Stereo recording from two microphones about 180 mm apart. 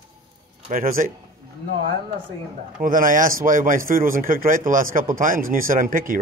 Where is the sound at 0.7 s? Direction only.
50° right (ahead or behind).